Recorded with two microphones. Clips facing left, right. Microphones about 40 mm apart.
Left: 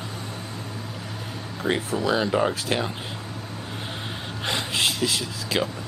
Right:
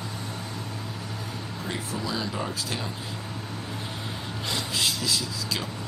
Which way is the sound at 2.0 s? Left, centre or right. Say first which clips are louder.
Left 10 dB; left.